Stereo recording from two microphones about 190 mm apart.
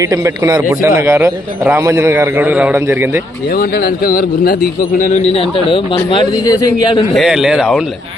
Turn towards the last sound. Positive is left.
turn(degrees=0)  # may be behind; listen again after turning